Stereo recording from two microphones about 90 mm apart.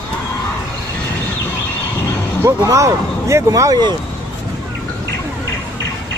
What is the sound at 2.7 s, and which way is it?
Speech, 35° right (ahead or behind).